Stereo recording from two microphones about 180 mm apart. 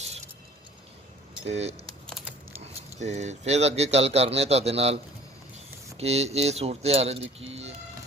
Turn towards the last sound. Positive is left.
turn(degrees=-35)  # may be behind; listen again after turning